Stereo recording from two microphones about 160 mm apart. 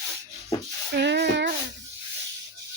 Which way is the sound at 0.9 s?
90° right.